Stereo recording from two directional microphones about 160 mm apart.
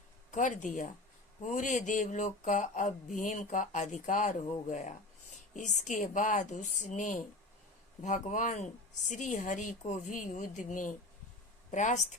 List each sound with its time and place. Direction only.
0.3 s speech: 50° left (ahead or behind)